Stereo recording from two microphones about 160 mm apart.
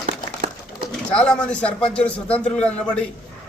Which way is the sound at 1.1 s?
5° left (ahead or behind).